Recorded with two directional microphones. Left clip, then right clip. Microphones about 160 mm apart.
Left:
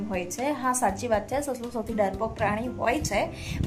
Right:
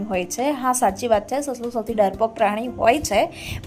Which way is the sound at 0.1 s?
30° right (ahead or behind).